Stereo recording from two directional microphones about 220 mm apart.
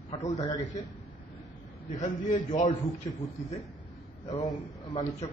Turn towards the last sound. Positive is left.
turn(degrees=25)  # may be behind; listen again after turning